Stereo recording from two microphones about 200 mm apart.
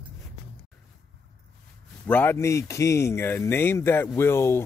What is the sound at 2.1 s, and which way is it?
Speech, 10° left (ahead or behind).